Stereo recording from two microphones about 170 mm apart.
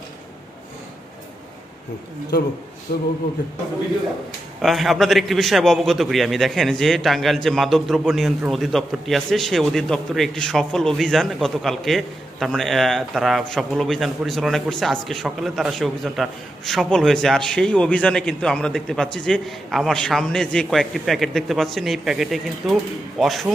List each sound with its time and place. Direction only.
2.9 s speech: 60° left (ahead or behind)
3.4 s a man's voice: 85° left
4.6 s a man's voice: centre (ahead or behind)